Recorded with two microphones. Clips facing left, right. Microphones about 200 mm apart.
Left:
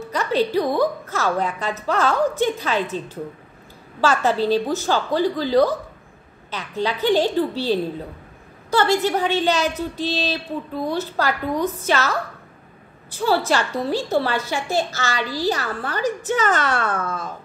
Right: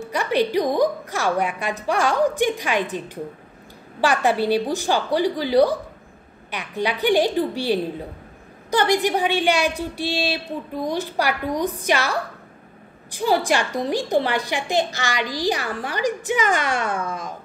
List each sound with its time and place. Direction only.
0.0 s a woman's voice: 15° right (ahead or behind)
4.0 s a woman's voice: 15° right (ahead or behind)